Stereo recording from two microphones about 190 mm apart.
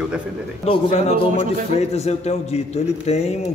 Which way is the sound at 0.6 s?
30° left (ahead or behind).